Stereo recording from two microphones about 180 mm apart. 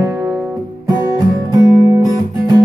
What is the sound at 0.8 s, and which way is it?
Guitar, 20° right (ahead or behind).